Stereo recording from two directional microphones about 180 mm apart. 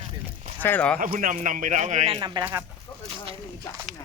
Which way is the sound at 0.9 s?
50° right (ahead or behind).